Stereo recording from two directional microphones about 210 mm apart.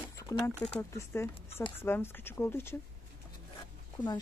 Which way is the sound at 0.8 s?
10° left (ahead or behind).